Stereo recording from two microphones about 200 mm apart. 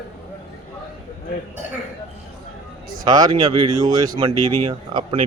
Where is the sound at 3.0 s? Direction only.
20° right (ahead or behind).